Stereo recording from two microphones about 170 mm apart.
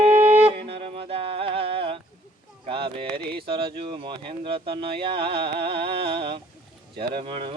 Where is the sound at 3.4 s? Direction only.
30° right (ahead or behind).